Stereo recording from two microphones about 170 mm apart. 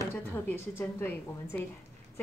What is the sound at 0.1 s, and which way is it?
A woman's voice, 10° left (ahead or behind).